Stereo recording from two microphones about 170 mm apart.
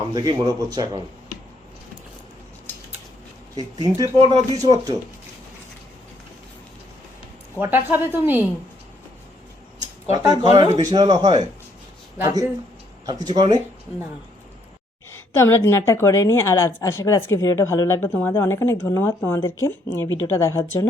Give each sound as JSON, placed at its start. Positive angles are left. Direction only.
{"t": 0.1, "sound": "speech", "side_deg": -20}
{"t": 3.5, "sound": "speech", "side_deg": -25}
{"t": 7.6, "sound": "a woman's voice", "side_deg": -10}
{"t": 10.2, "sound": "speech", "side_deg": -25}
{"t": 15.4, "sound": "speech", "side_deg": 15}